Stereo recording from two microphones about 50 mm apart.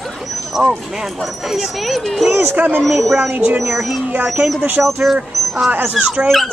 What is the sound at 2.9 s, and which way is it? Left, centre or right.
A woman's voice, centre.